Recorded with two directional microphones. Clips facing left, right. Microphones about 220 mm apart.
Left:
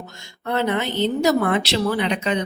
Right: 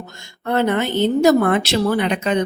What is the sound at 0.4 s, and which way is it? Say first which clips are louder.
A woman's voice: right 4 dB; 50° right (ahead or behind).